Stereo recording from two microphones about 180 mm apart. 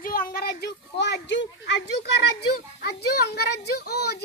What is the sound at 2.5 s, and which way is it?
A child's voice, 65° left (ahead or behind).